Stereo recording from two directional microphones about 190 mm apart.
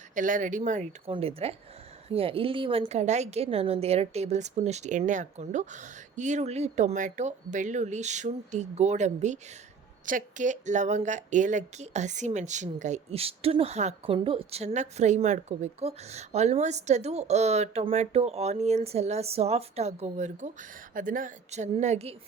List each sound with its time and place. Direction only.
0.1 s speech: 45° right (ahead or behind)